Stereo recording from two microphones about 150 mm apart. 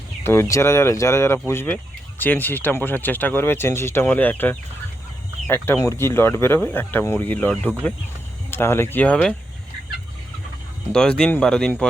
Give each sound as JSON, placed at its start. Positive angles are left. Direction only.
{"t": 0.2, "sound": "speech", "side_deg": 15}
{"t": 5.6, "sound": "speech", "side_deg": 20}
{"t": 10.9, "sound": "speech", "side_deg": 5}